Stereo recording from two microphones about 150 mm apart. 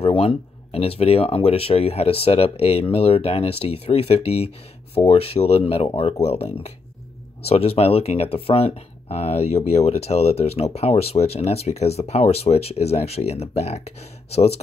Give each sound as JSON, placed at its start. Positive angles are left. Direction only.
{"t": 0.0, "sound": "speech", "side_deg": 40}